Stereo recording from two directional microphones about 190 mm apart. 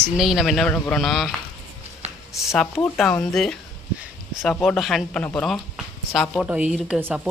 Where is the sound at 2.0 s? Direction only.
35° right (ahead or behind).